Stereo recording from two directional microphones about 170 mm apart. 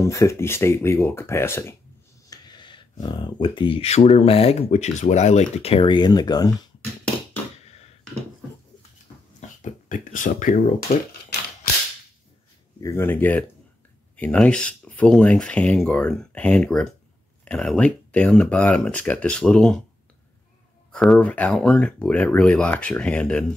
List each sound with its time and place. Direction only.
0.0 s speech: 15° left (ahead or behind)
9.6 s speech: 50° left (ahead or behind)
10.9 s speech: 65° left (ahead or behind)
12.8 s speech: 15° left (ahead or behind)
20.9 s speech: 5° left (ahead or behind)